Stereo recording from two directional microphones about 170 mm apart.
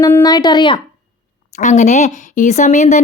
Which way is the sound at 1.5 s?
45° left (ahead or behind).